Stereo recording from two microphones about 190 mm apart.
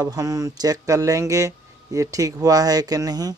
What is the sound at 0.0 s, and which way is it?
Speech, 20° right (ahead or behind).